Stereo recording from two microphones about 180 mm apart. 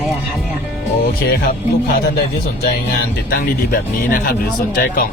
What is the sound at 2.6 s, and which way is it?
Speech, 55° left (ahead or behind).